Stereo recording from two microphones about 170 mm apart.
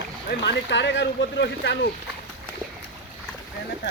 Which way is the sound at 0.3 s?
80° left.